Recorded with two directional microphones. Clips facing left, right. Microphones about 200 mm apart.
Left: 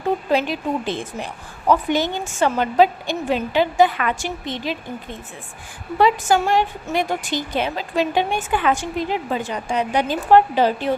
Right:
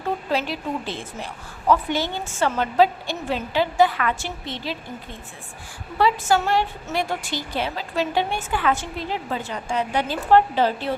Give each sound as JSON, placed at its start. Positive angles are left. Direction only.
{"t": 0.3, "sound": "a woman's voice", "side_deg": 15}
{"t": 6.0, "sound": "a woman's voice", "side_deg": 15}